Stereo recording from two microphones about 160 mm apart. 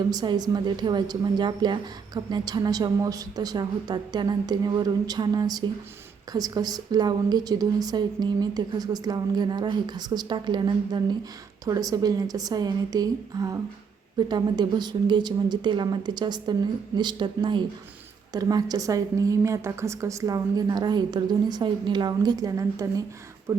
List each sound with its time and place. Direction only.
0.1 s a woman's voice: 25° right (ahead or behind)
23.5 s beatboxing: 15° right (ahead or behind)